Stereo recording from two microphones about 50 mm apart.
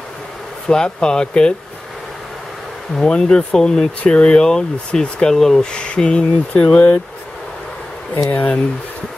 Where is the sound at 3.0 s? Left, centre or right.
Centre.